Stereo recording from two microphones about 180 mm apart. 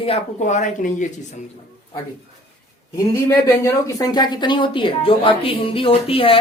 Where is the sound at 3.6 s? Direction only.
20° left (ahead or behind).